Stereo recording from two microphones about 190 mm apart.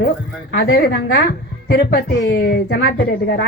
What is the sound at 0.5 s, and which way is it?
A woman's voice, 55° left (ahead or behind).